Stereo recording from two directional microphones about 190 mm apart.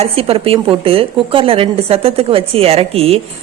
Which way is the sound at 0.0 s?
30° right (ahead or behind).